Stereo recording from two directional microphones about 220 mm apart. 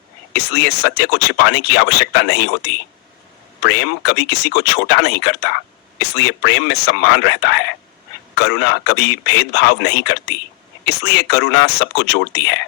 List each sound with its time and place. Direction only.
0.3 s speech: 50° left (ahead or behind)
3.6 s speech: 50° left (ahead or behind)